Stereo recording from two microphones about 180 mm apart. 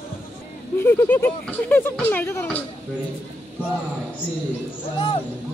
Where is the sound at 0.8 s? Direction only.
10° left (ahead or behind).